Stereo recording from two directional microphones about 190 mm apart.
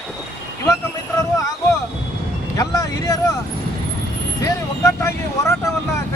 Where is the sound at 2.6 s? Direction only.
20° left (ahead or behind).